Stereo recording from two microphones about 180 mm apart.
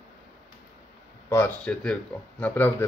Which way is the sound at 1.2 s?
15° left (ahead or behind).